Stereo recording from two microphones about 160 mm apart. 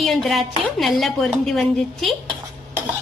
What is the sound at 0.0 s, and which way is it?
A woman's voice, centre (ahead or behind).